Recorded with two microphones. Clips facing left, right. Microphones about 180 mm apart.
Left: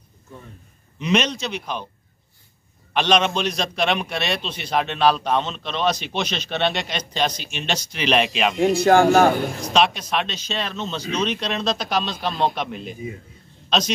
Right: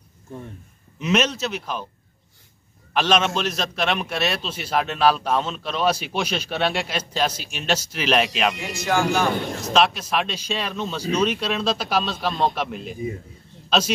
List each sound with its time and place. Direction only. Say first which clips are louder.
0.9 s a man's voice: even; 5° right (ahead or behind)
2.9 s a man's voice: left 1 dB; 5° right (ahead or behind)
8.5 s speech: left 8 dB; 60° left (ahead or behind)
9.7 s a man's voice: right 1 dB; 5° right (ahead or behind)